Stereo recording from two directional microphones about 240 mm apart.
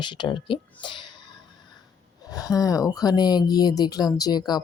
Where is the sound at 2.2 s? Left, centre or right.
Centre.